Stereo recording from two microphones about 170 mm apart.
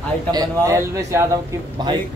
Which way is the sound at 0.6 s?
15° right (ahead or behind).